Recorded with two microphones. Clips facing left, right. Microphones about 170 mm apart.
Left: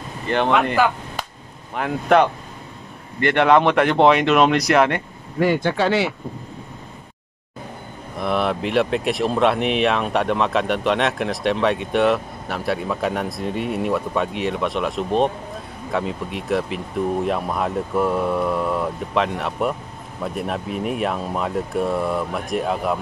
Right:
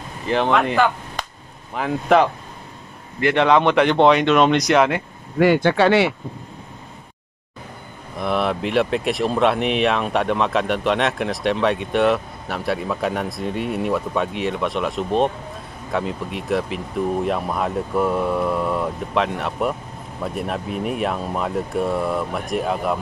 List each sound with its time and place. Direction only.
0.3 s chop: centre (ahead or behind)
1.8 s speech: centre (ahead or behind)
5.4 s speech: 75° right (ahead or behind)
8.2 s speech: centre (ahead or behind)